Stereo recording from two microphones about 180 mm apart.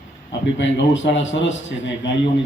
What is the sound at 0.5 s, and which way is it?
A man's voice, 90° left.